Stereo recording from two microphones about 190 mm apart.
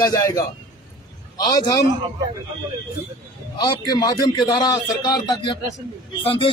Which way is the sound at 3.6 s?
20° left (ahead or behind).